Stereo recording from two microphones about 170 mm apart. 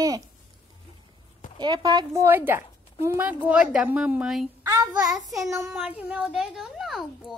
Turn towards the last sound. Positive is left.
turn(degrees=0)  # may be behind; listen again after turning